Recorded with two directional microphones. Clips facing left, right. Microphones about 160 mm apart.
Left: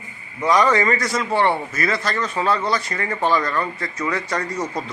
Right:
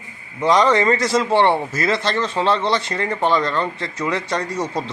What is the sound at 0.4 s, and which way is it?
A man's voice, 20° right (ahead or behind).